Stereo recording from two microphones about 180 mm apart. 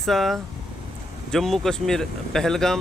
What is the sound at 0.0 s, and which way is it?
Speech, centre (ahead or behind).